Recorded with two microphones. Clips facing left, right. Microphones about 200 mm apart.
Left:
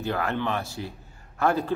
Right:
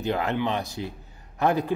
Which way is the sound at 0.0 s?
20° right (ahead or behind).